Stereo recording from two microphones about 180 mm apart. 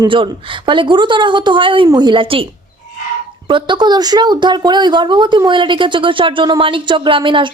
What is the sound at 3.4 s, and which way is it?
Speech, 25° right (ahead or behind).